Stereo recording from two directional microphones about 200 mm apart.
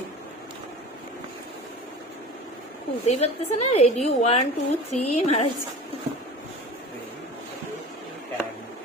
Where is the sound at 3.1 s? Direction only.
30° left (ahead or behind).